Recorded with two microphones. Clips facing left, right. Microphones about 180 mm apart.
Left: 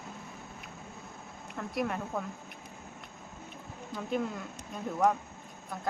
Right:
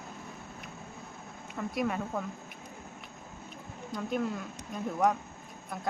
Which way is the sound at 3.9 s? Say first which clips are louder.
Right 1 dB; centre (ahead or behind).